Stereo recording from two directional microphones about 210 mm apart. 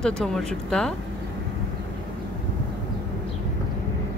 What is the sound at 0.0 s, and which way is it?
Speech, 5° left (ahead or behind).